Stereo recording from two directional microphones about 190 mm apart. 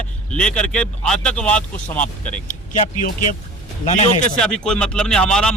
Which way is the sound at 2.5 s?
40° left (ahead or behind).